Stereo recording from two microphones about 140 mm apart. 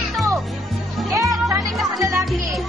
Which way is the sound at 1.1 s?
20° right (ahead or behind).